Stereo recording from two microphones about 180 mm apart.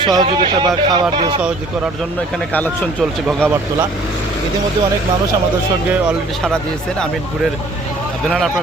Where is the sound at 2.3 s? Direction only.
5° left (ahead or behind).